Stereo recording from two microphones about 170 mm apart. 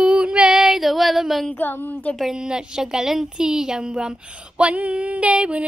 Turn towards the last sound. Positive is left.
turn(degrees=-5)  # may be behind; listen again after turning